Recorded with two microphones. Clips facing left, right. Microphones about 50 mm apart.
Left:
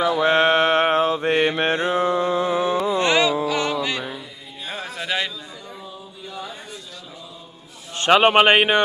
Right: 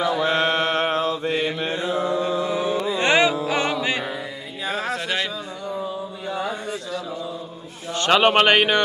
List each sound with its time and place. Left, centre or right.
0.1 s mantra: left
1.3 s mantra: left
3.0 s music: right
4.9 s a sound: centre
6.2 s a sound: right
8.1 s a man's voice: centre